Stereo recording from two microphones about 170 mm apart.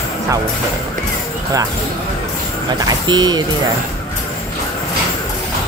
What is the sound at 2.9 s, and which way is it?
Speech, 25° right (ahead or behind).